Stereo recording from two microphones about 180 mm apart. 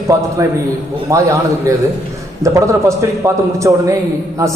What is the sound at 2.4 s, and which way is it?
A man's voice, 15° right (ahead or behind).